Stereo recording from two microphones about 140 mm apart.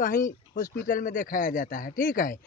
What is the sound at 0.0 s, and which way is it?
Speech, 75° left (ahead or behind).